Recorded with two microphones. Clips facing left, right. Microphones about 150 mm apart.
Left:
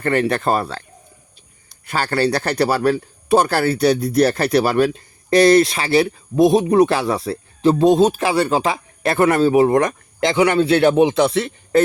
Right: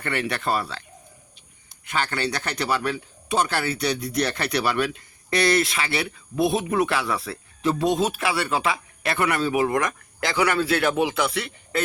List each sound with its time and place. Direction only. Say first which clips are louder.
0.0 s speech: left 9 dB; 40° left (ahead or behind)
1.8 s speech: left 7 dB; 40° left (ahead or behind)
3.2 s speech: left 8 dB; 55° left (ahead or behind)
3.5 s speech: left 9 dB; 45° left (ahead or behind)
4.4 s speech: left 8 dB; 30° left (ahead or behind)